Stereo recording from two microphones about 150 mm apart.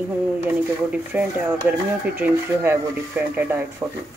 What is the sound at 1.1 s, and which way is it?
Cutlery, 10° right (ahead or behind).